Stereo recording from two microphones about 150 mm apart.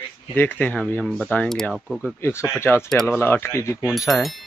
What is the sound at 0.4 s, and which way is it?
Speech, 10° left (ahead or behind).